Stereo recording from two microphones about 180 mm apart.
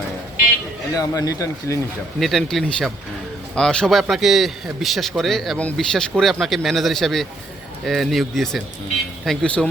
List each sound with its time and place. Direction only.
0.9 s speech: 20° left (ahead or behind)
2.1 s a man's voice: centre (ahead or behind)